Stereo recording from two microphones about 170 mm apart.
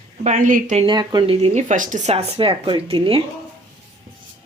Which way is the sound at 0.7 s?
25° right (ahead or behind).